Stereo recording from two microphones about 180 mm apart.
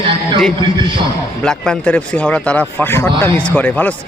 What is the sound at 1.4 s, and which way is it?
Speech, 5° left (ahead or behind).